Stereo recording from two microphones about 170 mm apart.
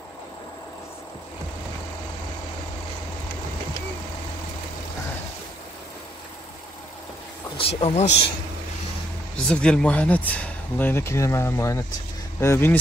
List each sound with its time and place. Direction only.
7.5 s speech: 35° left (ahead or behind)
9.5 s speech: 5° left (ahead or behind)